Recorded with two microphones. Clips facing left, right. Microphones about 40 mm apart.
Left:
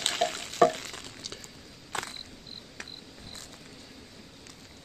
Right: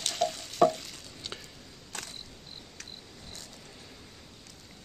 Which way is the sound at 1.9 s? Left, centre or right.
Left.